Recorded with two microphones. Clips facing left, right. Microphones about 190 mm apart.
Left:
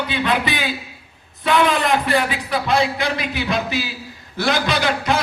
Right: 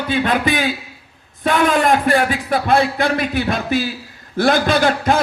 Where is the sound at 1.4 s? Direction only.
45° right (ahead or behind).